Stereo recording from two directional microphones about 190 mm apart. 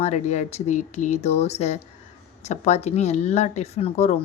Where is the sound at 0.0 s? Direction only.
35° left (ahead or behind).